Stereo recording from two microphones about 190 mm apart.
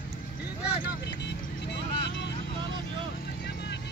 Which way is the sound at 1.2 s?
65° left (ahead or behind).